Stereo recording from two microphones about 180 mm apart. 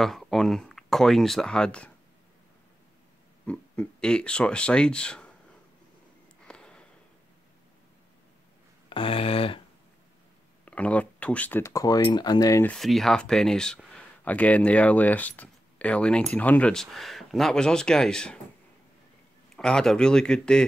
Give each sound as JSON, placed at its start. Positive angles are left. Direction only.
{"t": 0.0, "sound": "speech", "side_deg": 0}
{"t": 3.4, "sound": "speech", "side_deg": 5}
{"t": 6.4, "sound": "a sound", "side_deg": 5}
{"t": 8.8, "sound": "a sound", "side_deg": 30}
{"t": 10.6, "sound": "speech", "side_deg": 5}
{"t": 12.6, "sound": "speech", "side_deg": 0}
{"t": 19.5, "sound": "speech", "side_deg": 5}